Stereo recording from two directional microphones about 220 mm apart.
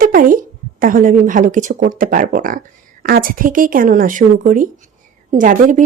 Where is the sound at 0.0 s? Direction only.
40° right (ahead or behind).